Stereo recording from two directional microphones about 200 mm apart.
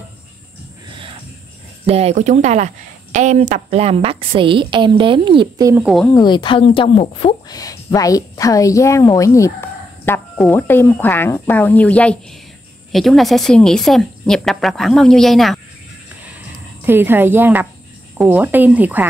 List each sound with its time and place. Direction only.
1.9 s a woman's voice: 30° right (ahead or behind)
6.1 s a woman's voice: 20° left (ahead or behind); by 15.6 s centre (ahead or behind)
16.8 s speech: 10° right (ahead or behind)